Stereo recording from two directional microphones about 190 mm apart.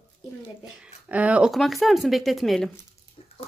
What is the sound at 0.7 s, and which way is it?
Speech, 5° right (ahead or behind).